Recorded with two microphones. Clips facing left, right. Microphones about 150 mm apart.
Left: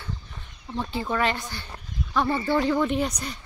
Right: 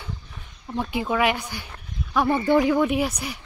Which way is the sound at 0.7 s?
10° right (ahead or behind).